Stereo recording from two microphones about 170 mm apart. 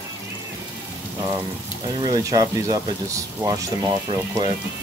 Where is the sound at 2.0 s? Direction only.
20° right (ahead or behind).